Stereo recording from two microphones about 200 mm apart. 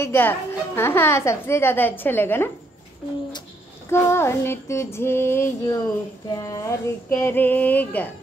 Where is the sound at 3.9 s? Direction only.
15° left (ahead or behind).